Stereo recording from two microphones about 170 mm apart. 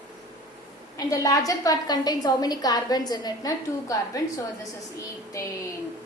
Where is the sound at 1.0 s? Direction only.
20° left (ahead or behind).